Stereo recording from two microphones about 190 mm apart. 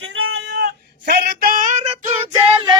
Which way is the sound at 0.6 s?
55° right (ahead or behind).